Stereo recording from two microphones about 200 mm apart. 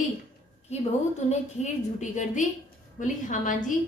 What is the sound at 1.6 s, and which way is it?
A woman's voice, 35° left (ahead or behind).